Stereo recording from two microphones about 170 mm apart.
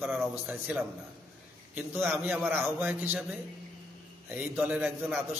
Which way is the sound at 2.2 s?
10° right (ahead or behind).